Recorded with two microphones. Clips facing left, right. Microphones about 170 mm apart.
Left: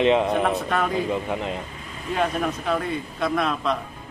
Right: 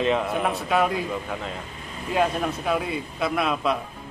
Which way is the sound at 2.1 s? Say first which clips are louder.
Right 1 dB; 5° right (ahead or behind).